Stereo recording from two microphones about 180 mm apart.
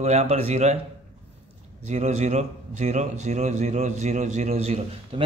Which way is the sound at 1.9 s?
40° right (ahead or behind).